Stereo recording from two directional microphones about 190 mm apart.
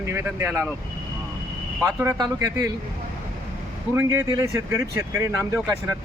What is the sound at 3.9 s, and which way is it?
Speech, 15° right (ahead or behind).